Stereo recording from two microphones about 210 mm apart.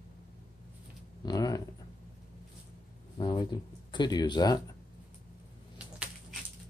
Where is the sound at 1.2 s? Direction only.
15° left (ahead or behind).